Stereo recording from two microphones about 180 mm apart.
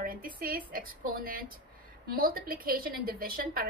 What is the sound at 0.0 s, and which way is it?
A woman's voice, 50° right (ahead or behind).